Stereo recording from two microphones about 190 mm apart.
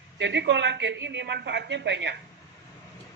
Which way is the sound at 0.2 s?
70° right (ahead or behind).